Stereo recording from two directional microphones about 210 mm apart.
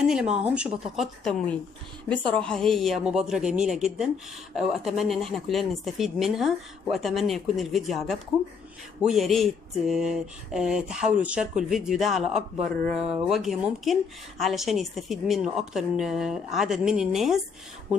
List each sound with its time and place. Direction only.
0.0 s speech: 5° right (ahead or behind)